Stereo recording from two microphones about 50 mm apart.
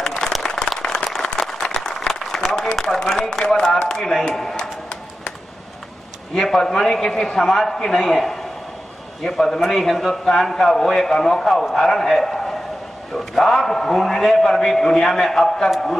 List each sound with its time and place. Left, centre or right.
0.0 s applause: centre
3.3 s a man's voice: centre
3.9 s a sound: centre
6.3 s a man's voice: centre